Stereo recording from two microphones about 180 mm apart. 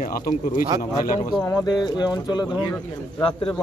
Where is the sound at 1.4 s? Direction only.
20° left (ahead or behind).